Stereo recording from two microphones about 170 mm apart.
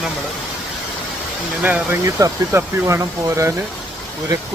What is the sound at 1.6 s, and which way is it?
Speech, 10° right (ahead or behind).